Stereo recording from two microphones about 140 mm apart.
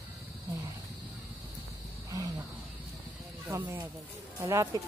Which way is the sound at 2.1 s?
25° right (ahead or behind).